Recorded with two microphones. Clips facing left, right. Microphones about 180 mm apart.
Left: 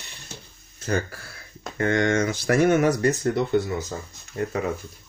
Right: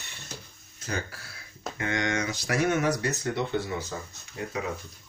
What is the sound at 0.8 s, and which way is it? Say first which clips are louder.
Speech: left 8 dB; 50° left (ahead or behind).